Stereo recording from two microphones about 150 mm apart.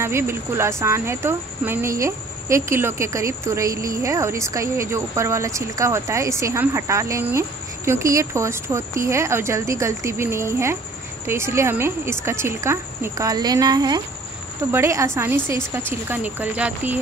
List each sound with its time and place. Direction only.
0.0 s speech: 15° right (ahead or behind)